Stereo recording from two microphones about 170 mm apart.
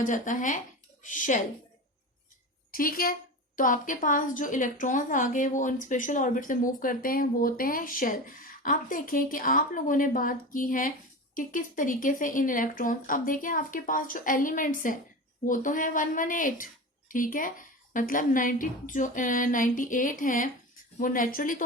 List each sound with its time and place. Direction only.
0.0 s a woman's voice: 50° left (ahead or behind)
2.7 s a woman's voice: 55° left (ahead or behind)